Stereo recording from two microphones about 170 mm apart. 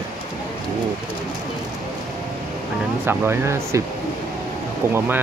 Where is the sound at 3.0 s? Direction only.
15° right (ahead or behind).